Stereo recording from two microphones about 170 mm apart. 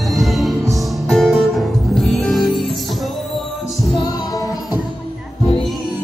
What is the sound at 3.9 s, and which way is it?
Music, 20° left (ahead or behind).